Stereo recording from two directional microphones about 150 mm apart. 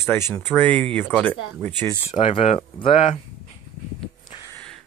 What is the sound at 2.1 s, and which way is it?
Speech, 45° left (ahead or behind).